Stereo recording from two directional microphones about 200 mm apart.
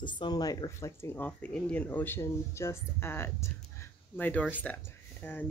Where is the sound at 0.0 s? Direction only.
25° left (ahead or behind).